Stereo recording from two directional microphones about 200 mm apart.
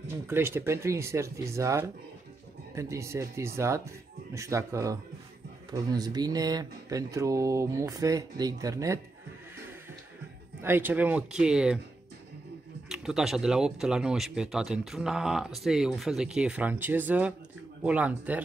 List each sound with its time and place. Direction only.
0.1 s speech: 10° right (ahead or behind)
10.6 s speech: 10° right (ahead or behind)
12.8 s speech: centre (ahead or behind)